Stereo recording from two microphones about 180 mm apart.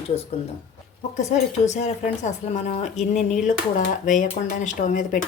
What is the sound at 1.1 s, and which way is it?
Speech, 40° left (ahead or behind).